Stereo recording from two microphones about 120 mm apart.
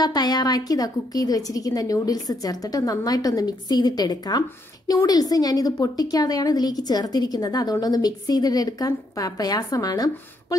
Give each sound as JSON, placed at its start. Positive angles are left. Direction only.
{"t": 0.0, "sound": "a woman's voice", "side_deg": 35}